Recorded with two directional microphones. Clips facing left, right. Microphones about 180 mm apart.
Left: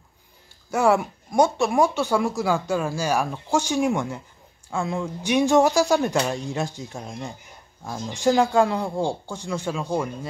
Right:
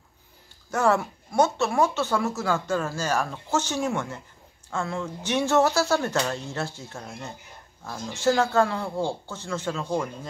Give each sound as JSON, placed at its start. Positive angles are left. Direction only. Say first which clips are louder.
{"t": 0.7, "sound": "speech", "louder": "left 3 dB", "side_deg": 10}